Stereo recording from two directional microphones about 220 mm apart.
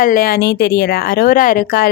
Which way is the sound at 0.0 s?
40° left (ahead or behind).